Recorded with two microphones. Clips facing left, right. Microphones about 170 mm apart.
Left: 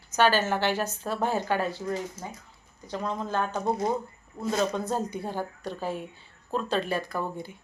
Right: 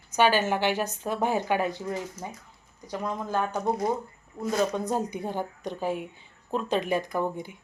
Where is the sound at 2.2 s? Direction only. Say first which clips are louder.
Right 1 dB; 30° left (ahead or behind).